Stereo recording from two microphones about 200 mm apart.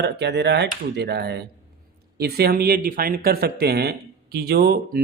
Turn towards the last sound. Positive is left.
turn(degrees=-55)  # may be behind; listen again after turning